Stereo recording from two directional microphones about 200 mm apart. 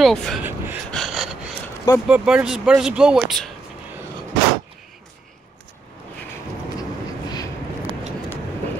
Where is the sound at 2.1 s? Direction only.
5° right (ahead or behind).